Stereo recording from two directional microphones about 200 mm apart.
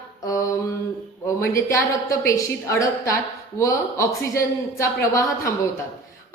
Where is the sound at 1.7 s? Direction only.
15° left (ahead or behind).